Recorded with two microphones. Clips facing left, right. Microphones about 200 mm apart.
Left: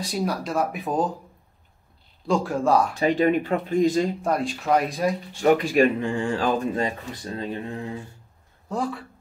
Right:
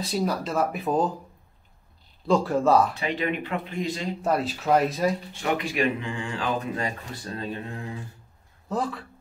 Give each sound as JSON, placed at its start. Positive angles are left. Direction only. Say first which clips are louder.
{"t": 0.0, "sound": "speech", "louder": "even", "side_deg": 0}
{"t": 2.2, "sound": "speech", "louder": "right 1 dB", "side_deg": 0}
{"t": 2.9, "sound": "speech", "louder": "left 8 dB", "side_deg": 45}
{"t": 4.2, "sound": "speech", "louder": "even", "side_deg": -5}
{"t": 5.4, "sound": "speech", "louder": "left 8 dB", "side_deg": 45}
{"t": 6.8, "sound": "speech", "louder": "left 4 dB", "side_deg": 20}
{"t": 8.6, "sound": "speech", "louder": "left 1 dB", "side_deg": 0}